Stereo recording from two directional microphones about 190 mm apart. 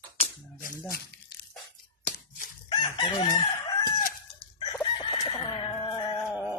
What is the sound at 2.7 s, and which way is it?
Chicken, 25° left (ahead or behind).